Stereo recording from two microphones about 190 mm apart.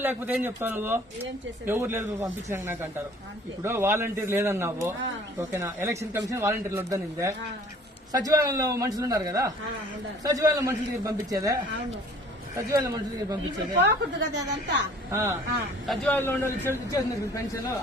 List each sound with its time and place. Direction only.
0.0 s speech: 10° right (ahead or behind)
13.7 s speech: 65° right (ahead or behind)
15.1 s speech: 15° right (ahead or behind)
15.9 s a man's voice: 10° left (ahead or behind)